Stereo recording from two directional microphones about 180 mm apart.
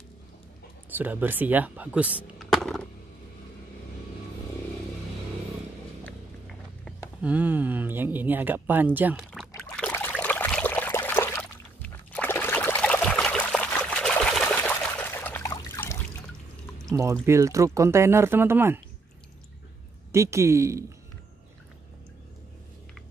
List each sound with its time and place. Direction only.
0.9 s speech: 10° right (ahead or behind)
7.2 s speech: 10° right (ahead or behind)
9.8 s trickle: 10° left (ahead or behind)
10.1 s a sound: 10° left (ahead or behind)
16.9 s speech: 15° right (ahead or behind)
20.1 s speech: 15° right (ahead or behind)